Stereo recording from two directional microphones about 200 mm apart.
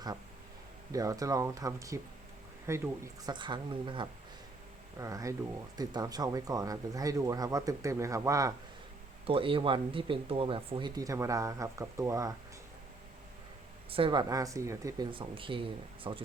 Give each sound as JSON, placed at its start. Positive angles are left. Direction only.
{"t": 0.9, "sound": "speech", "side_deg": -15}
{"t": 9.2, "sound": "speech", "side_deg": -25}
{"t": 13.9, "sound": "speech", "side_deg": -25}